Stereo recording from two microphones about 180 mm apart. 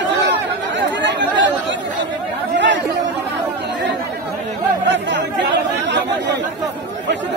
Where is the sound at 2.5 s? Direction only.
85° right.